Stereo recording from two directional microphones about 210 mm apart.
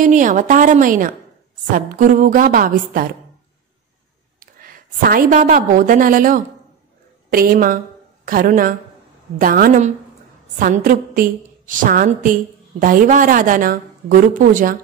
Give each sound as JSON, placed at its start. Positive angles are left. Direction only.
{"t": 0.0, "sound": "a woman's voice", "side_deg": -35}
{"t": 4.4, "sound": "a woman's voice", "side_deg": -45}